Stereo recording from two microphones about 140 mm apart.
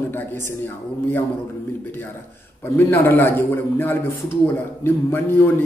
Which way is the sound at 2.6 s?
15° left (ahead or behind).